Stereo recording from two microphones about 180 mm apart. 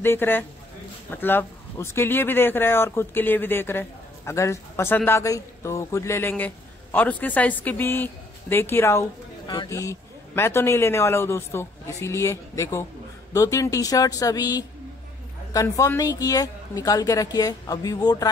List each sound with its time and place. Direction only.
0.0 s a woman's voice: 10° left (ahead or behind)